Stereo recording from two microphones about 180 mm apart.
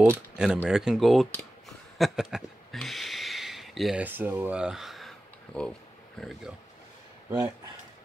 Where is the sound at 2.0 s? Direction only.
Centre (ahead or behind).